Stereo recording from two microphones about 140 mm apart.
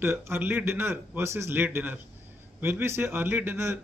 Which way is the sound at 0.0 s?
15° right (ahead or behind).